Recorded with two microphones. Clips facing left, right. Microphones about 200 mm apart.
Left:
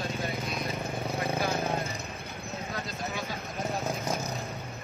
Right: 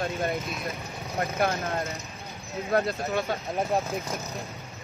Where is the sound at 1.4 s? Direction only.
60° right (ahead or behind).